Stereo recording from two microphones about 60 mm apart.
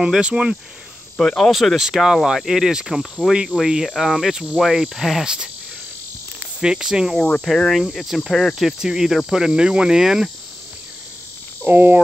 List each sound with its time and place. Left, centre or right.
0.0 s cricket: centre
1.1 s speech: centre
3.6 s cricket: centre
3.9 s speech: centre
7.4 s speech: centre
7.8 s cricket: centre
11.6 s cricket: right